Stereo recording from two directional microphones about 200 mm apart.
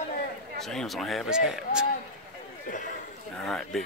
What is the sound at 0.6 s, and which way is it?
A man's voice, centre (ahead or behind).